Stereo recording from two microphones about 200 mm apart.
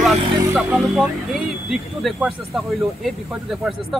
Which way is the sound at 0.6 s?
Centre (ahead or behind).